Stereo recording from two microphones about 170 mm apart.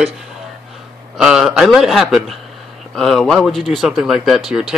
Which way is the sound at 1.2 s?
5° right (ahead or behind).